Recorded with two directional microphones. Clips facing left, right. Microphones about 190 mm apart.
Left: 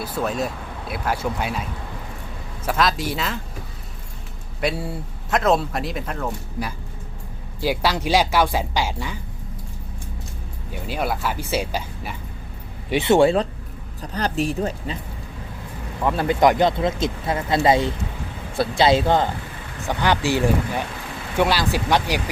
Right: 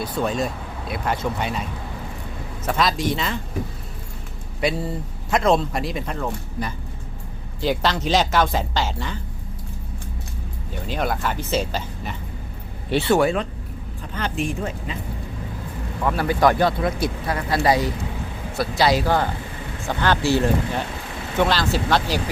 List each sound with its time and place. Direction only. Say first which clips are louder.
0.0 s speech: right 1 dB; 5° left (ahead or behind)
2.6 s speech: even; 5° left (ahead or behind)
4.6 s speech: right 1 dB; centre (ahead or behind)
10.7 s speech: even; 10° left (ahead or behind); by 14.9 s 35° left (ahead or behind)
16.0 s speech: left 1 dB; 20° left (ahead or behind)